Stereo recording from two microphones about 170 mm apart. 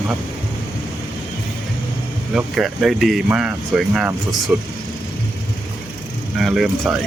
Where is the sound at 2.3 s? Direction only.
Centre (ahead or behind).